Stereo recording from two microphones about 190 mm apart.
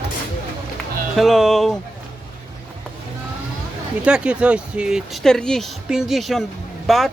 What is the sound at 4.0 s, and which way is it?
Speech, 5° right (ahead or behind).